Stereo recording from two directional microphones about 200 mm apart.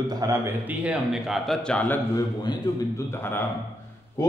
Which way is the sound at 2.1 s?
20° left (ahead or behind).